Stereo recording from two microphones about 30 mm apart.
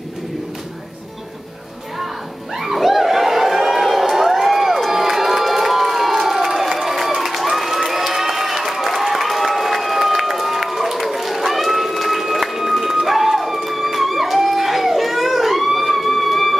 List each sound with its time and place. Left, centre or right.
2.5 s a sound: centre
7.2 s crowd: centre
13.0 s music: centre